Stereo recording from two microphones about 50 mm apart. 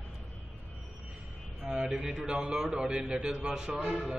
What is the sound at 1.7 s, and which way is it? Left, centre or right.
A man's voice, centre.